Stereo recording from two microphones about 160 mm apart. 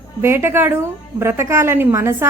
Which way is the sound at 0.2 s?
15° right (ahead or behind).